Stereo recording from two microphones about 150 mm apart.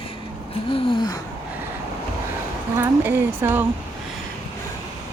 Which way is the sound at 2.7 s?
15° right (ahead or behind).